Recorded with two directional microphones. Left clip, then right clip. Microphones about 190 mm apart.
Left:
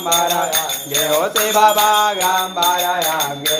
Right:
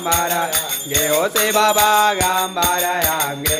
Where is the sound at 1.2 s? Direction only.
35° right (ahead or behind).